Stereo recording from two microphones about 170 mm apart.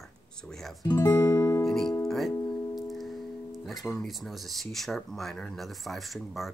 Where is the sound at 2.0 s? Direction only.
Centre (ahead or behind).